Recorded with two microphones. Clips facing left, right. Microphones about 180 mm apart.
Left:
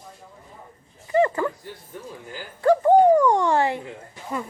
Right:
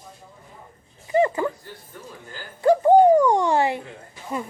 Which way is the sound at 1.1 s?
15° right (ahead or behind).